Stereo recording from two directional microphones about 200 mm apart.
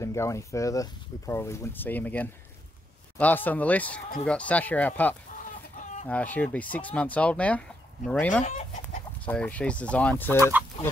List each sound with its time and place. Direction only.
0.0 s speech: 15° left (ahead or behind)
5.3 s chicken: 40° left (ahead or behind)
6.0 s speech: 10° left (ahead or behind)